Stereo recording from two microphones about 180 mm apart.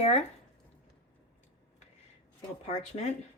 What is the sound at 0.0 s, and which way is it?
Speech, 35° left (ahead or behind).